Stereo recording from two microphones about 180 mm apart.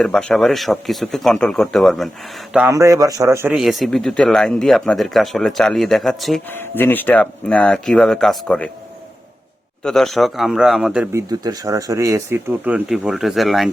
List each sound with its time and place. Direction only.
0.0 s speech: 5° left (ahead or behind)
2.7 s speech: 20° right (ahead or behind)
3.5 s speech: centre (ahead or behind)
6.5 s speech: 10° left (ahead or behind)
9.8 s speech: centre (ahead or behind)
11.3 s speech: 20° right (ahead or behind); by 13.7 s centre (ahead or behind)